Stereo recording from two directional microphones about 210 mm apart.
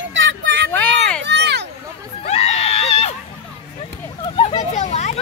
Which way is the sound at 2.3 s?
30° left (ahead or behind).